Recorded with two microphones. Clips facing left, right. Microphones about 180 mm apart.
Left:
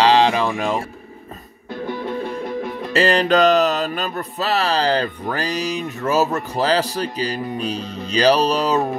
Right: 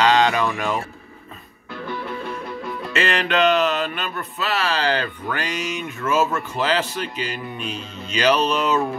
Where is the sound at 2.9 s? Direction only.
35° left (ahead or behind).